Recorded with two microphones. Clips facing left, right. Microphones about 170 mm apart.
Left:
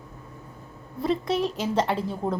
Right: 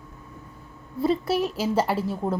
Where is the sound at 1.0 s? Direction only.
5° right (ahead or behind).